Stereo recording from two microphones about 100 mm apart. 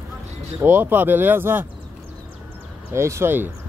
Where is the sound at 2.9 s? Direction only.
25° right (ahead or behind).